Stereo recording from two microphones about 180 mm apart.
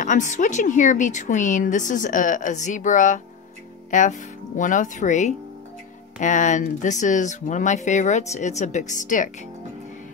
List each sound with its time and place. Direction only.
0.0 s a woman's voice: 45° left (ahead or behind)